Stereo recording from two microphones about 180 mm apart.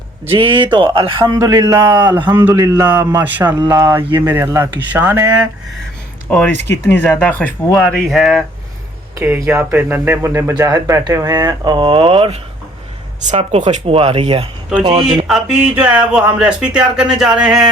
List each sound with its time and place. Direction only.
0.3 s a man's voice: 30° right (ahead or behind); by 5.5 s 10° right (ahead or behind)
6.9 s speech: 10° left (ahead or behind)
9.1 s speech: 15° right (ahead or behind); by 12.4 s 30° right (ahead or behind)
13.2 s speech: 40° right (ahead or behind)
15.3 s speech: 5° right (ahead or behind)